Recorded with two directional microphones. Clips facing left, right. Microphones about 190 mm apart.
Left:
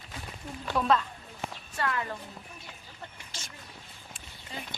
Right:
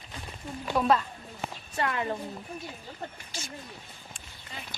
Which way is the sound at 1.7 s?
20° right (ahead or behind).